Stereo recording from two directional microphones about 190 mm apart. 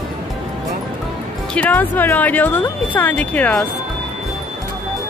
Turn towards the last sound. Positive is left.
turn(degrees=5)  # may be behind; listen again after turning